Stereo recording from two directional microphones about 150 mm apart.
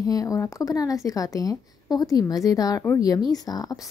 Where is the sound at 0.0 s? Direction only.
25° left (ahead or behind).